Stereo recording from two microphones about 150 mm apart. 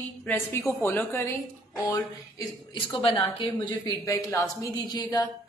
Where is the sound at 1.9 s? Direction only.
30° left (ahead or behind).